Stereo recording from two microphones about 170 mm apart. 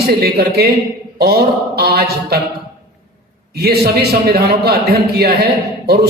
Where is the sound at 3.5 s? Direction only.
70° right (ahead or behind).